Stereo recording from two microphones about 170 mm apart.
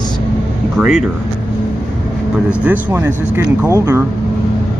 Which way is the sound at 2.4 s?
10° right (ahead or behind).